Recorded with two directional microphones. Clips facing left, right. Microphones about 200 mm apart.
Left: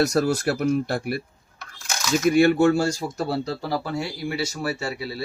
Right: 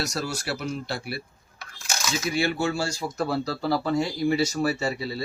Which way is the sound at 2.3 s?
50° left (ahead or behind).